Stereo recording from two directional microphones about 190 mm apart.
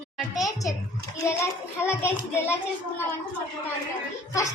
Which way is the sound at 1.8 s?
10° left (ahead or behind).